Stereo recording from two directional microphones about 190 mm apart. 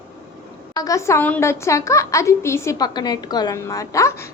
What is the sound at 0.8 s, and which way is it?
A woman's voice, 15° left (ahead or behind).